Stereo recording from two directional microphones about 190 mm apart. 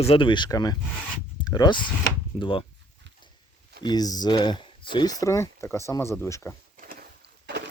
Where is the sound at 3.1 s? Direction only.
70° right (ahead or behind).